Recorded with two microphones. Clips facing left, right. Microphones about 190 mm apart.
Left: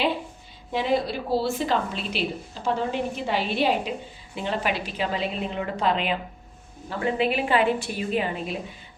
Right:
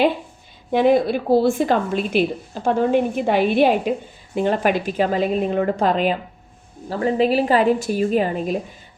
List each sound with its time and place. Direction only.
0.7 s a woman's voice: 55° right (ahead or behind)